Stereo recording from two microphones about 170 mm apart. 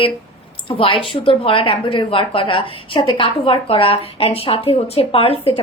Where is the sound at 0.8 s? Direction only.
30° left (ahead or behind).